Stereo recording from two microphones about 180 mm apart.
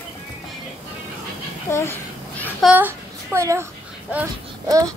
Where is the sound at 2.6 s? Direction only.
10° right (ahead or behind).